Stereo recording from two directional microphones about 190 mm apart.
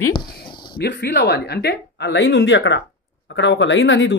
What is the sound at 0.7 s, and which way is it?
Speech, 60° left (ahead or behind).